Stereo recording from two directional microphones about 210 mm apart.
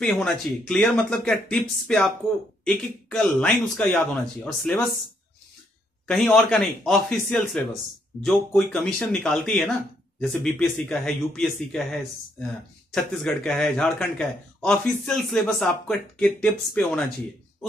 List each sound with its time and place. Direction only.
0.0 s a man's voice: 5° left (ahead or behind)
6.0 s a man's voice: 5° left (ahead or behind)